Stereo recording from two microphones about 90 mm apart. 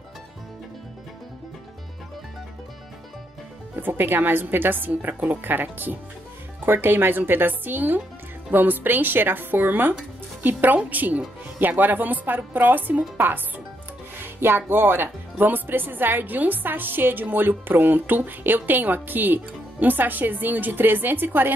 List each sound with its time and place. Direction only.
3.7 s speech: 25° right (ahead or behind)
14.1 s speech: 25° right (ahead or behind)